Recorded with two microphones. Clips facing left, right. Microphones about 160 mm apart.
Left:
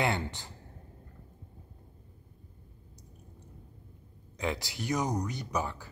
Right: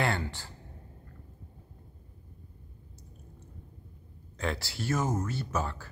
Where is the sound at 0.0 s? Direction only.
20° left (ahead or behind).